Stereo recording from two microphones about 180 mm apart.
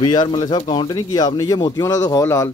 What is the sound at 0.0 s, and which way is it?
Speech, 25° left (ahead or behind).